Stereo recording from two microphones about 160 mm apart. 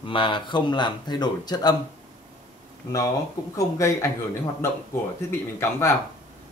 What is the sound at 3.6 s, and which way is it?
Speech, 20° left (ahead or behind).